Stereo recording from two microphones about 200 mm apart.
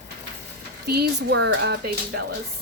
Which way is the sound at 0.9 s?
55° right (ahead or behind).